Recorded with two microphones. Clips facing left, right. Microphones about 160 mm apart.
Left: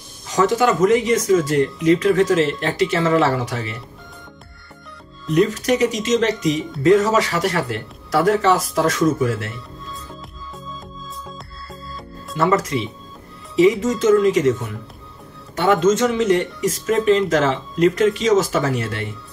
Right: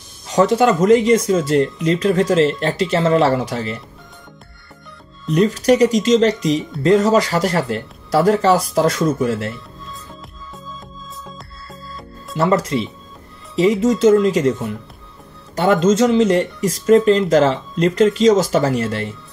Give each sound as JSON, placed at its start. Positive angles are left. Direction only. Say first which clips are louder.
{"t": 0.3, "sound": "speech", "louder": "right 3 dB", "side_deg": -30}
{"t": 5.3, "sound": "speech", "louder": "right 3 dB", "side_deg": -35}
{"t": 12.4, "sound": "speech", "louder": "right 2 dB", "side_deg": -30}